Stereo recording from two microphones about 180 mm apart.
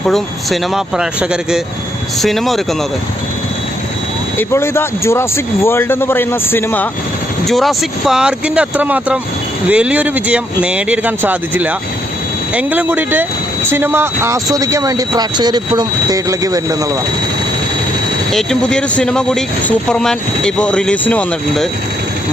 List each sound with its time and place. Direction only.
0.0 s speech: centre (ahead or behind)
4.4 s speech: 15° left (ahead or behind)
7.4 s speech: centre (ahead or behind); by 17.0 s 20° right (ahead or behind)
18.3 s speech: 5° left (ahead or behind)